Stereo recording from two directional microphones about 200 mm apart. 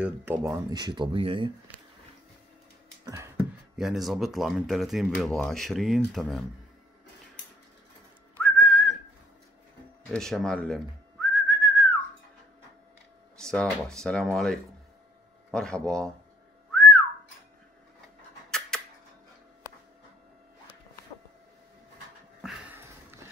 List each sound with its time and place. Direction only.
0.0 s speech: 10° right (ahead or behind); by 1.5 s 25° right (ahead or behind)
3.7 s speech: centre (ahead or behind)
8.4 s whistling: 5° left (ahead or behind)
10.0 s whistling: centre (ahead or behind)
13.4 s speech: 5° left (ahead or behind)
16.7 s whistling: 5° left (ahead or behind)
18.7 s a sound: 5° left (ahead or behind)
22.4 s a sound: 5° right (ahead or behind)